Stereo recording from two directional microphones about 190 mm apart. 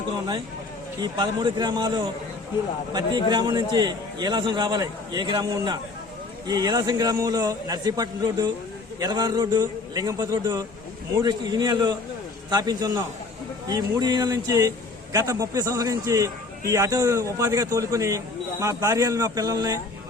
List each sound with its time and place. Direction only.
1.0 s a man's voice: 20° right (ahead or behind)